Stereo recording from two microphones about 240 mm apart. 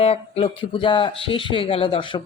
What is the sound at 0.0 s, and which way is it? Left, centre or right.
Speech, left.